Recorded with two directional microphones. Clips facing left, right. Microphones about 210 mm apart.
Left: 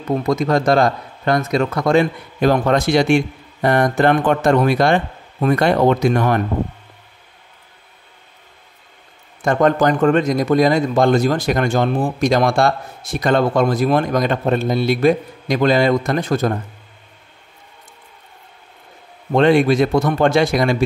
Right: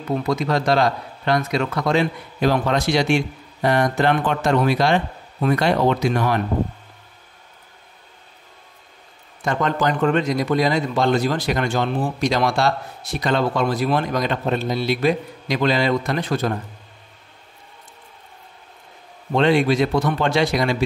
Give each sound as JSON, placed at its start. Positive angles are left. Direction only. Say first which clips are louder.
{"t": 0.1, "sound": "a man's voice", "louder": "left 4 dB", "side_deg": 45}
{"t": 9.4, "sound": "a man's voice", "louder": "left 6 dB", "side_deg": 50}
{"t": 19.3, "sound": "a man's voice", "louder": "left 4 dB", "side_deg": 50}